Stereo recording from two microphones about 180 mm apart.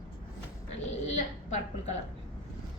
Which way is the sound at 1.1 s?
40° left (ahead or behind).